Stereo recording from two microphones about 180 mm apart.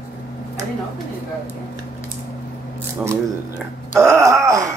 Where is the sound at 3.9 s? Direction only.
15° right (ahead or behind).